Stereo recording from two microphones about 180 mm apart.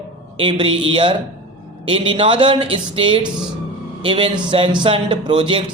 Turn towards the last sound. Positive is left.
turn(degrees=-30)  # may be behind; listen again after turning